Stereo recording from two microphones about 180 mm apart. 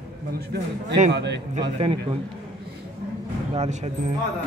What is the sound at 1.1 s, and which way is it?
Speech, 70° right (ahead or behind).